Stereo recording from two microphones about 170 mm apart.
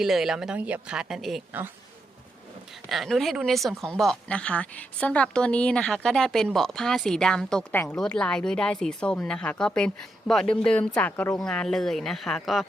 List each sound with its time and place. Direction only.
0.0 s speech: centre (ahead or behind)
2.9 s speech: centre (ahead or behind)